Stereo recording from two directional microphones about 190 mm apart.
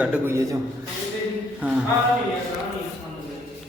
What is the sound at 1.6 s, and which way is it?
Speech, 10° right (ahead or behind).